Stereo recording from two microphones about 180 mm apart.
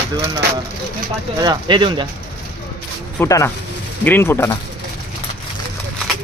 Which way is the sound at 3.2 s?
15° left (ahead or behind).